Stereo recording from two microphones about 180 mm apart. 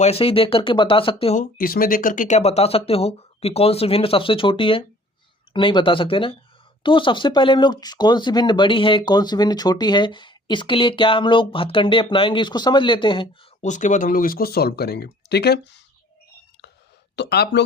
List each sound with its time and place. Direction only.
0.0 s speech: 35° left (ahead or behind)
1.4 s speech: 55° left (ahead or behind); by 13.2 s 25° left (ahead or behind)
13.6 s speech: 45° left (ahead or behind); by 15.8 s 65° left (ahead or behind)
17.2 s speech: 65° left (ahead or behind)